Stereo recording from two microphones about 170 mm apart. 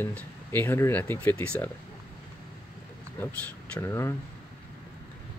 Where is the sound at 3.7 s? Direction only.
15° left (ahead or behind).